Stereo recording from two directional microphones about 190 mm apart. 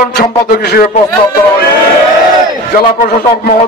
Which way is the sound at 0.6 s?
55° left (ahead or behind).